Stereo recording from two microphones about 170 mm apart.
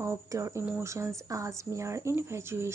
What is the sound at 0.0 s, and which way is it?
Speech, 15° right (ahead or behind).